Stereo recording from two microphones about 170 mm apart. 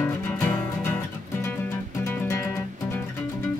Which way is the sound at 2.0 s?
15° left (ahead or behind).